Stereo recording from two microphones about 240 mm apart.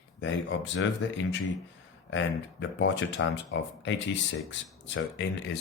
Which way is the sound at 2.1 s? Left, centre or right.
Left.